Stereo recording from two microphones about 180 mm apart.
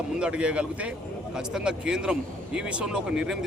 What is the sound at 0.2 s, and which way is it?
Speech, 5° right (ahead or behind).